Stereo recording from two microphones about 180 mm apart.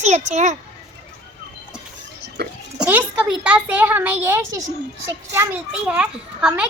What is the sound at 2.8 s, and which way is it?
A woman's voice, 5° right (ahead or behind).